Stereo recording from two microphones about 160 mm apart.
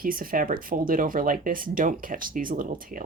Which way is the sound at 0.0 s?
60° right (ahead or behind).